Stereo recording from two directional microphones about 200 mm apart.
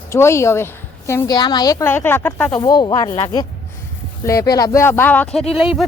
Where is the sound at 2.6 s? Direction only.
20° left (ahead or behind).